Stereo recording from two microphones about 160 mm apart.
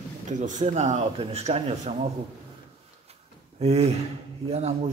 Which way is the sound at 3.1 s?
40° right (ahead or behind).